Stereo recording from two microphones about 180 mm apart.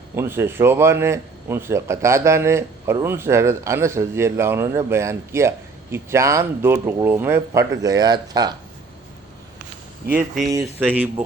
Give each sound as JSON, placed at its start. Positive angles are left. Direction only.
{"t": 0.2, "sound": "a man's voice", "side_deg": -15}
{"t": 10.5, "sound": "a man's voice", "side_deg": -15}